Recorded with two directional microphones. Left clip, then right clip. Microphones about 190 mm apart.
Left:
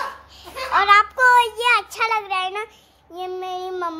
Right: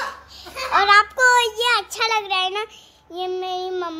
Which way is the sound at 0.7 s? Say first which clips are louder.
Even; 15° right (ahead or behind).